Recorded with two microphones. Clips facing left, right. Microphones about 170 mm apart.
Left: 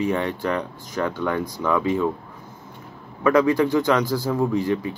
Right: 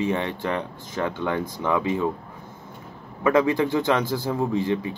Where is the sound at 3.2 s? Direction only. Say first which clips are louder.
Left 2 dB; 25° right (ahead or behind).